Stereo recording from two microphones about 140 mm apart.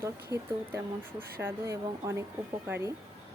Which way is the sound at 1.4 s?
20° right (ahead or behind).